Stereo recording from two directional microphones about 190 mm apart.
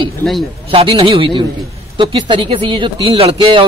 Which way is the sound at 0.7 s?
30° right (ahead or behind).